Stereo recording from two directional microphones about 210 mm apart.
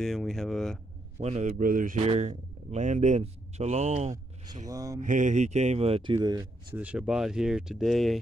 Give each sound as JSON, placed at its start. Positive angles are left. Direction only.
{"t": 0.0, "sound": "speech", "side_deg": 0}
{"t": 1.2, "sound": "speech", "side_deg": -35}
{"t": 4.6, "sound": "mantra", "side_deg": -15}
{"t": 5.0, "sound": "speech", "side_deg": -35}
{"t": 6.7, "sound": "speech", "side_deg": -5}